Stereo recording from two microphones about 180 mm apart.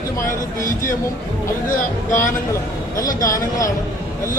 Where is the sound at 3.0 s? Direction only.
20° left (ahead or behind).